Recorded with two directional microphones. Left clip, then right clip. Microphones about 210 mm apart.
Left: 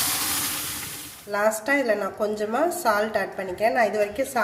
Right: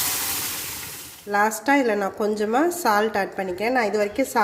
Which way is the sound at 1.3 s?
35° right (ahead or behind).